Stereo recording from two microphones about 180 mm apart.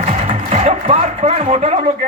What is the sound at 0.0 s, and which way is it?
A man's voice, 40° right (ahead or behind).